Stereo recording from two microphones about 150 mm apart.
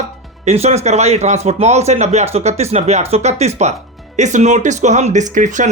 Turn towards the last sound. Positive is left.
turn(degrees=-55)  # may be behind; listen again after turning